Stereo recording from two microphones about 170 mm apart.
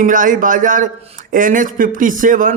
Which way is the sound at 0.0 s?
50° right (ahead or behind).